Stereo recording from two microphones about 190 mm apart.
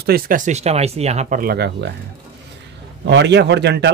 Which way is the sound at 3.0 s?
65° right (ahead or behind).